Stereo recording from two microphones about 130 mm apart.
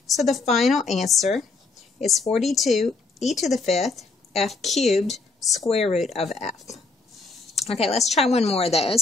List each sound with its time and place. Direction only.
0.1 s a woman's voice: centre (ahead or behind)
5.7 s a woman's voice: 55° left (ahead or behind)
7.6 s a woman's voice: 50° left (ahead or behind)